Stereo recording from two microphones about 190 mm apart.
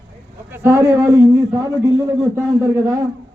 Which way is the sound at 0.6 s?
15° right (ahead or behind).